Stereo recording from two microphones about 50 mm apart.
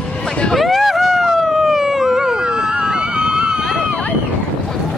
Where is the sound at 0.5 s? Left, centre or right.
Centre.